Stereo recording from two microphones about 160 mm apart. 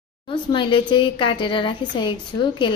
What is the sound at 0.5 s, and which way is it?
A woman's voice, 30° left (ahead or behind).